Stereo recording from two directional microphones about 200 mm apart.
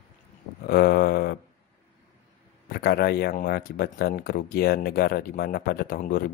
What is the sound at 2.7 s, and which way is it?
Speech, 50° left (ahead or behind).